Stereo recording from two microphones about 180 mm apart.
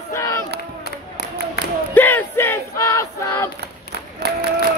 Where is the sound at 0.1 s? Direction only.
15° left (ahead or behind).